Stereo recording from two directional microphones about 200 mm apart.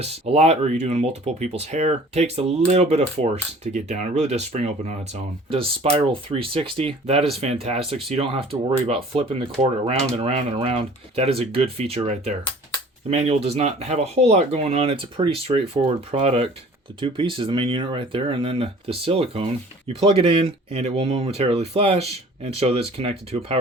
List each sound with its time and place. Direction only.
0.0 s speech: 30° right (ahead or behind)